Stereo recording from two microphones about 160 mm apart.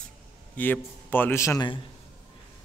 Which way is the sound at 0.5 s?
10° left (ahead or behind).